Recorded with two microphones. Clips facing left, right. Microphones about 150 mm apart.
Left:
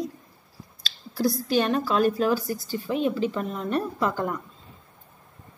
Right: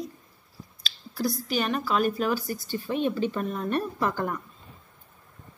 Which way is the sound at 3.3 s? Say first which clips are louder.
Left 1 dB; 20° left (ahead or behind).